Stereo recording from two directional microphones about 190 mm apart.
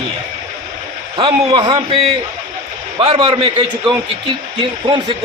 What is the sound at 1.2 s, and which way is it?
A man's voice, 25° right (ahead or behind).